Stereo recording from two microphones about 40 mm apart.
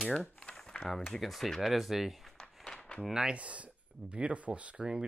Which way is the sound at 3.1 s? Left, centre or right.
Centre.